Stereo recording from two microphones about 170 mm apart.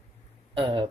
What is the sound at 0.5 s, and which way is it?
Speech, 30° right (ahead or behind).